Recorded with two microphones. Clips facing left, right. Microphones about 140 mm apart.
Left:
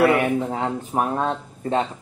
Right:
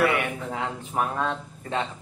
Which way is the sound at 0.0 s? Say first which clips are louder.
Left 6 dB; 30° left (ahead or behind).